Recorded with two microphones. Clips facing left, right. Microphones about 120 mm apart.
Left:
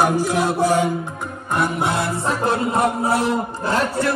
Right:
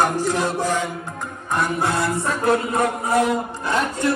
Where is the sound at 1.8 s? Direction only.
25° left (ahead or behind).